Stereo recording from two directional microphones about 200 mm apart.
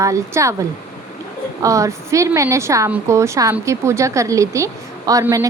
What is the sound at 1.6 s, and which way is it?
A woman's voice, 15° right (ahead or behind).